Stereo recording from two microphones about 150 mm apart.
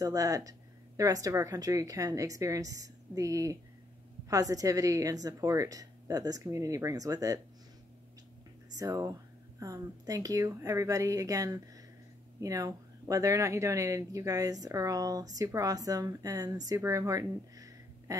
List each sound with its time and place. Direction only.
0.0 s speech: 25° right (ahead or behind)
8.7 s speech: 25° right (ahead or behind)